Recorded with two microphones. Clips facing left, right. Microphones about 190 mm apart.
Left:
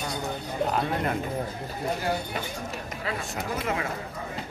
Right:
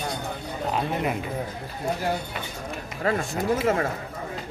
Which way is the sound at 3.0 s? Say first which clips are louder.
Right 9 dB; 50° right (ahead or behind).